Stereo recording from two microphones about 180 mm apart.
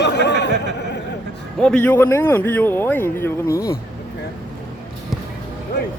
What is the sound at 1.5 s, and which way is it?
A man's voice, 5° left (ahead or behind).